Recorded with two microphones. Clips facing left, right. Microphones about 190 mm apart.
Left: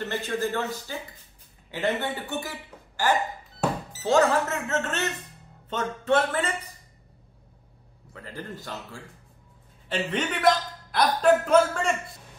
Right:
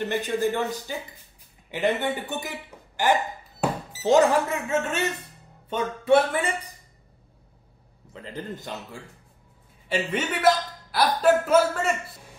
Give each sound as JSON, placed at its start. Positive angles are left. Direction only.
{"t": 0.0, "sound": "a man's voice", "side_deg": -15}
{"t": 3.6, "sound": "a man's voice", "side_deg": -15}
{"t": 8.1, "sound": "a man's voice", "side_deg": -20}
{"t": 9.8, "sound": "a man's voice", "side_deg": -10}